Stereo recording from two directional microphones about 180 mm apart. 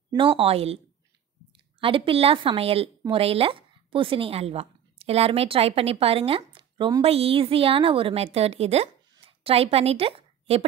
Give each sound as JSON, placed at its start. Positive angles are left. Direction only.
{"t": 0.1, "sound": "a woman's voice", "side_deg": -30}
{"t": 1.8, "sound": "a woman's voice", "side_deg": -30}
{"t": 9.1, "sound": "a sound", "side_deg": -30}